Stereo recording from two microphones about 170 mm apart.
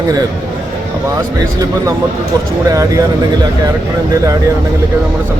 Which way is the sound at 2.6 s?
20° right (ahead or behind).